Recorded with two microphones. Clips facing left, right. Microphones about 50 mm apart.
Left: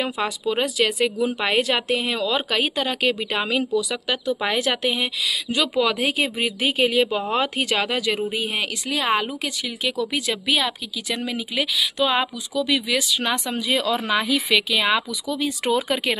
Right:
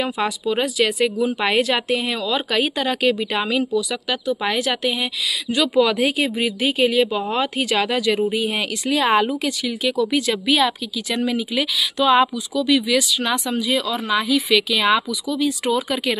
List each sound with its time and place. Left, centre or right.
0.6 s speech: centre
6.1 s a woman's voice: left; by 9.4 s centre
9.4 s speech: centre; by 16.2 s left